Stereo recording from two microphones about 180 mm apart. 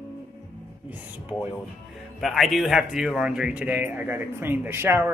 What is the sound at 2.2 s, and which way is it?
Speech, centre (ahead or behind).